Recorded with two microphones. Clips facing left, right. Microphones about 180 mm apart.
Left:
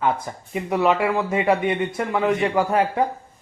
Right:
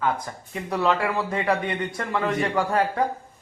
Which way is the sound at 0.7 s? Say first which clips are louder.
Left 4 dB; 15° left (ahead or behind).